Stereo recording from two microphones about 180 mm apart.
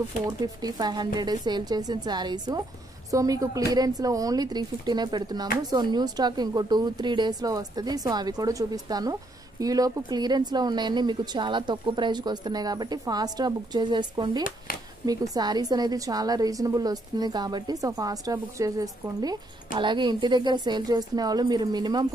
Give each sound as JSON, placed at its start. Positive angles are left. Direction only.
{"t": 0.4, "sound": "speech", "side_deg": -20}